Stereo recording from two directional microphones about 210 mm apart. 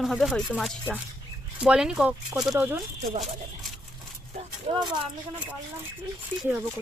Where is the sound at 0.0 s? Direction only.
Centre (ahead or behind).